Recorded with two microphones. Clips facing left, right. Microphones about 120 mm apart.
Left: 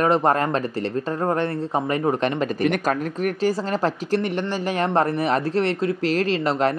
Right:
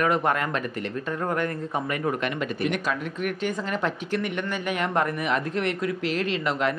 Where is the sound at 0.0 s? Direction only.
35° left (ahead or behind).